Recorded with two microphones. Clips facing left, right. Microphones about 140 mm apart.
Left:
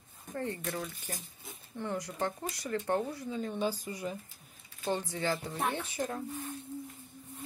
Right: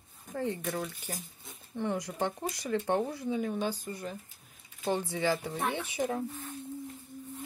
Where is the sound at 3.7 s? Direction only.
10° left (ahead or behind).